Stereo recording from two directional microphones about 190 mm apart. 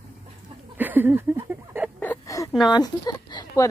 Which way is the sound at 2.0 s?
15° left (ahead or behind).